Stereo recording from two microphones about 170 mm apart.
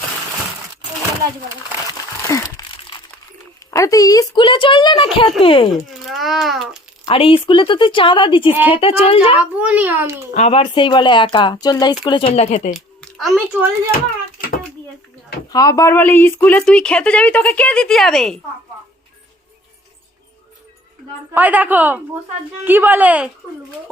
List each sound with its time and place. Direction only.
2.2 s crumpling: 20° left (ahead or behind)
3.7 s a woman's voice: 20° left (ahead or behind)
6.1 s a child's voice: centre (ahead or behind)
7.0 s a woman's voice: 30° left (ahead or behind)
8.4 s a child's voice: 10° right (ahead or behind)
8.7 s a woman's voice: 35° left (ahead or behind)
9.4 s a child's voice: 10° right (ahead or behind)
10.3 s a woman's voice: 40° left (ahead or behind)
10.6 s a woman's voice: 30° left (ahead or behind)
12.4 s a woman's voice: 40° left (ahead or behind)
12.7 s a child's voice: centre (ahead or behind)
15.4 s a woman's voice: 20° left (ahead or behind); by 18.3 s centre (ahead or behind)
21.3 s a child's voice: 10° right (ahead or behind)